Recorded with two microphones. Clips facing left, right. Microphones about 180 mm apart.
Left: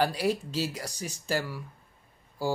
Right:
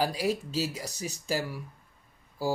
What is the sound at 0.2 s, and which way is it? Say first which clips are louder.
Speech: left 1 dB; 40° right (ahead or behind).